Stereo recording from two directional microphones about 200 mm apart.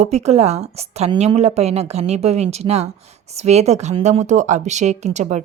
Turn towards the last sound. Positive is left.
turn(degrees=-35)  # may be behind; listen again after turning